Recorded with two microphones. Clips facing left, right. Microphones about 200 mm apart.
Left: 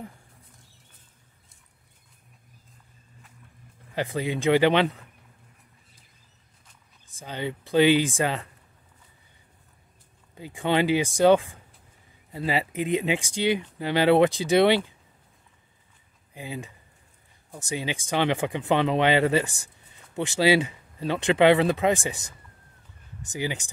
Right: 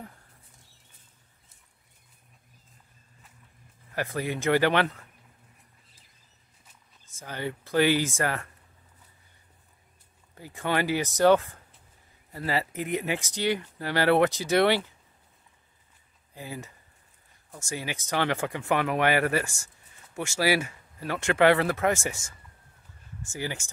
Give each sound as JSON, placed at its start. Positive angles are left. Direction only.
{"t": 3.9, "sound": "speech", "side_deg": 15}
{"t": 7.2, "sound": "speech", "side_deg": 15}
{"t": 10.3, "sound": "speech", "side_deg": 15}
{"t": 16.3, "sound": "speech", "side_deg": 15}
{"t": 23.2, "sound": "speech", "side_deg": 20}